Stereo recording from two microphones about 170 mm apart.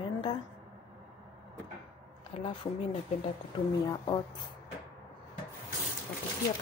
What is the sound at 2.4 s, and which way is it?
Speech, 25° left (ahead or behind).